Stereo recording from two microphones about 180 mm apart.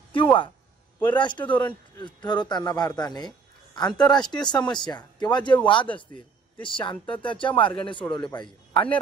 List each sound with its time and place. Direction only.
0.1 s speech: 30° left (ahead or behind)
1.4 s speech: 10° left (ahead or behind)
1.7 s speech: 25° left (ahead or behind)
6.6 s speech: 25° left (ahead or behind)
8.7 s a man's voice: 5° left (ahead or behind)